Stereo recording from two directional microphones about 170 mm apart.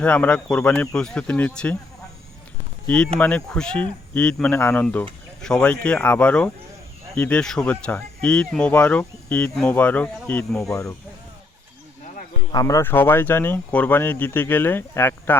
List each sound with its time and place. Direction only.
0.0 s speech: 5° left (ahead or behind)
3.2 s speech: 10° left (ahead or behind)
10.7 s speech: 15° left (ahead or behind)
12.5 s speech: 20° left (ahead or behind)